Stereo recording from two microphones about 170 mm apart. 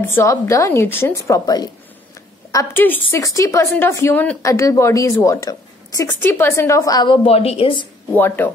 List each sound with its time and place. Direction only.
0.1 s speech: 15° left (ahead or behind)
2.5 s a woman's voice: 10° left (ahead or behind); by 7.9 s 30° left (ahead or behind)
8.1 s speech: 10° left (ahead or behind)